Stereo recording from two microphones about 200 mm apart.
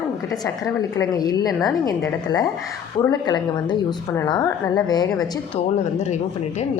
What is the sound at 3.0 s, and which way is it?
A woman's voice, 20° left (ahead or behind).